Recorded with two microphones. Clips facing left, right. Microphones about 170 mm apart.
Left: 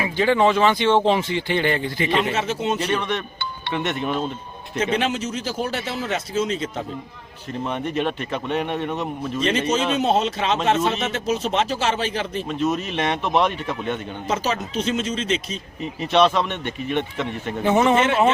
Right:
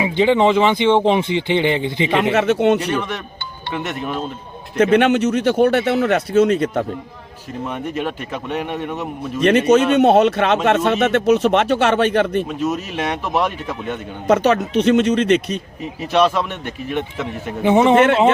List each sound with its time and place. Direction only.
0.0 s speech: 20° right (ahead or behind)
2.3 s speech: 65° right (ahead or behind)
2.9 s speech: 5° right (ahead or behind)
4.8 s speech: 60° right (ahead or behind)
7.7 s speech: 5° right (ahead or behind)
9.4 s speech: 60° right (ahead or behind)
12.5 s speech: 5° right (ahead or behind)
14.3 s speech: 60° right (ahead or behind)
15.8 s speech: 5° right (ahead or behind)
17.9 s speech: 60° right (ahead or behind)